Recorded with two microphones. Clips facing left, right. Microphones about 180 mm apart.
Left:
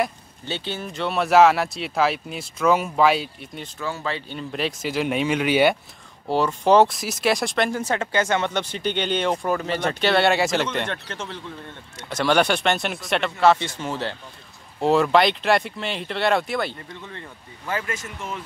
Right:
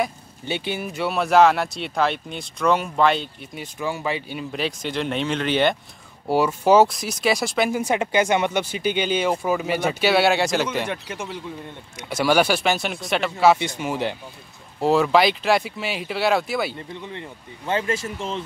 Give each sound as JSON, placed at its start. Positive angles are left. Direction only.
{"t": 0.5, "sound": "speech", "side_deg": -15}
{"t": 3.5, "sound": "speech", "side_deg": -15}
{"t": 6.2, "sound": "speech", "side_deg": -10}
{"t": 14.8, "sound": "speech", "side_deg": 0}
{"t": 17.0, "sound": "speech", "side_deg": -20}